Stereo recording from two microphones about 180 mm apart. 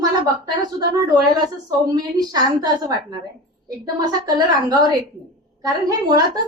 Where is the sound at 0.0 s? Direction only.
20° right (ahead or behind).